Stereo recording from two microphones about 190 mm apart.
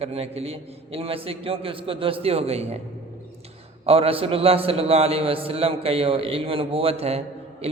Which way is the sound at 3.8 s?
30° right (ahead or behind).